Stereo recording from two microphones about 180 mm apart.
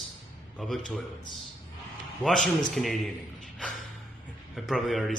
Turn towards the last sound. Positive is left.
turn(degrees=0)  # may be behind; listen again after turning